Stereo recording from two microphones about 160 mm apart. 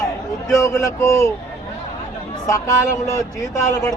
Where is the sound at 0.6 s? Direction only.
20° left (ahead or behind).